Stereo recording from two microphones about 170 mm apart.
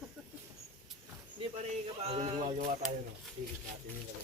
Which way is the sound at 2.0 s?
40° right (ahead or behind).